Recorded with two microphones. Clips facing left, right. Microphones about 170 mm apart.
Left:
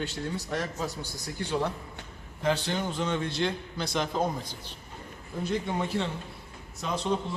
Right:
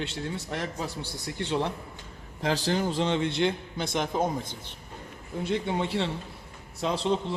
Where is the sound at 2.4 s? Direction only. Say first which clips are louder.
Right 1 dB; 35° right (ahead or behind).